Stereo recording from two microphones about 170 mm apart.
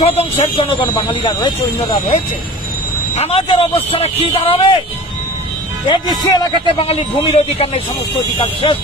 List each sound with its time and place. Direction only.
0.0 s a man's voice: 35° left (ahead or behind)
3.2 s a man's voice: 35° left (ahead or behind)
5.9 s a man's voice: 25° left (ahead or behind)